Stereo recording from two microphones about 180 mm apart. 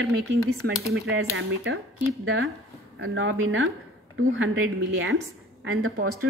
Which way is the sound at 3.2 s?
90° right.